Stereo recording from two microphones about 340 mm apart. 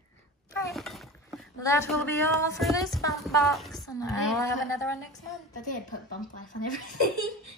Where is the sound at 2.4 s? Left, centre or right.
Centre.